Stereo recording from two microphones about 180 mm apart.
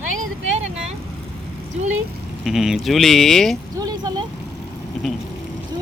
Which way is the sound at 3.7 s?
20° right (ahead or behind).